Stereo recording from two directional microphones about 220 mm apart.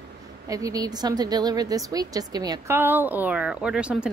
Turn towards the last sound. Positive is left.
turn(degrees=-5)  # may be behind; listen again after turning